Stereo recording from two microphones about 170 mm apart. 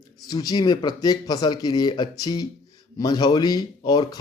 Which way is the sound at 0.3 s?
20° left (ahead or behind).